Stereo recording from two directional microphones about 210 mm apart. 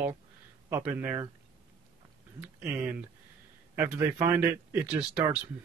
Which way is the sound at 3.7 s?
10° right (ahead or behind).